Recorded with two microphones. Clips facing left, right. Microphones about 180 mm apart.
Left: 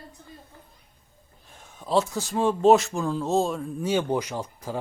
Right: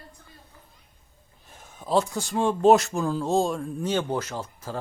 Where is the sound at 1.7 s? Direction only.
Centre (ahead or behind).